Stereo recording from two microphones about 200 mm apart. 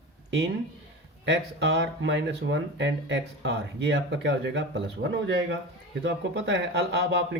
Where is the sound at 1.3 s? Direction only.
60° right (ahead or behind).